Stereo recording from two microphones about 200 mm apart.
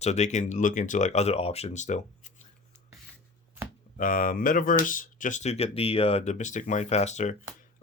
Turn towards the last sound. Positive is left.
turn(degrees=35)  # may be behind; listen again after turning